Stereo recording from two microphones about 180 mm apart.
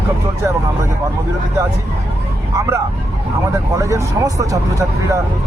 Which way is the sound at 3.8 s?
15° right (ahead or behind).